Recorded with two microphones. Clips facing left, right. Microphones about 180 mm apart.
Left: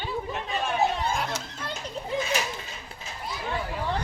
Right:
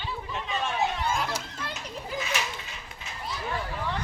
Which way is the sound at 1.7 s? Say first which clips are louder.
Left 7 dB; 30° left (ahead or behind).